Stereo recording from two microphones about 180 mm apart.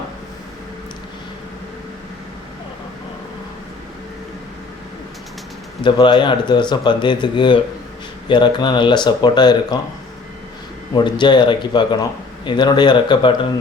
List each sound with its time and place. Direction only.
5.8 s speech: 25° left (ahead or behind)
10.9 s speech: 25° left (ahead or behind)